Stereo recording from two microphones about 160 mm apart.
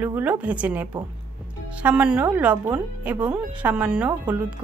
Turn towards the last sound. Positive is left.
turn(degrees=-5)  # may be behind; listen again after turning